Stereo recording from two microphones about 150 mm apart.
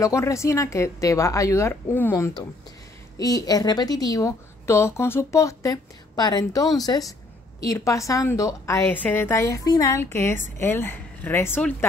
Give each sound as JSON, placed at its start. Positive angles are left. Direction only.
{"t": 0.0, "sound": "a woman's voice", "side_deg": 20}